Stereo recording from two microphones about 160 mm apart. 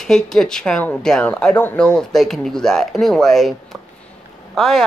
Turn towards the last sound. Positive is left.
turn(degrees=0)  # may be behind; listen again after turning